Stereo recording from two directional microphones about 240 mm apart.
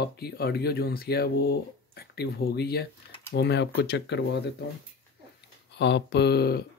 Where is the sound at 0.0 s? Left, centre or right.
Left.